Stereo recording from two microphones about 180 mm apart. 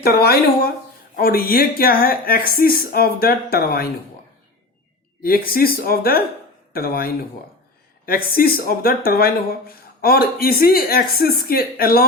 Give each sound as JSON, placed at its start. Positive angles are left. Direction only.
{"t": 0.0, "sound": "speech", "side_deg": 55}
{"t": 5.2, "sound": "speech", "side_deg": 55}